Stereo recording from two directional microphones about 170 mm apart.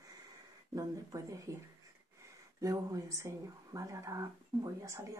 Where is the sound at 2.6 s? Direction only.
20° right (ahead or behind).